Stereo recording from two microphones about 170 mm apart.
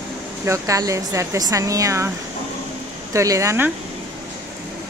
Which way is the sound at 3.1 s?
20° right (ahead or behind).